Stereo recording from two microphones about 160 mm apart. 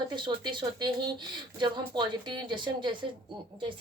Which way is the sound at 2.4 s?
30° right (ahead or behind).